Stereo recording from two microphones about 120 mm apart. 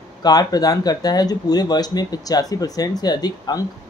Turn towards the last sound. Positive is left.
turn(degrees=35)  # may be behind; listen again after turning